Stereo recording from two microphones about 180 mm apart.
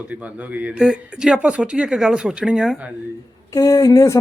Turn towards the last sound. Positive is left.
turn(degrees=15)  # may be behind; listen again after turning